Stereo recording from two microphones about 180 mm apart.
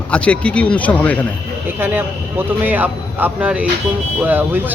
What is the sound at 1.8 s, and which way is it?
Speech, 10° right (ahead or behind).